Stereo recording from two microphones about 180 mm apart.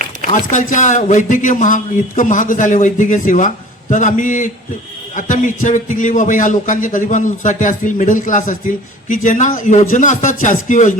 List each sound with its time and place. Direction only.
0.3 s speech: 45° left (ahead or behind)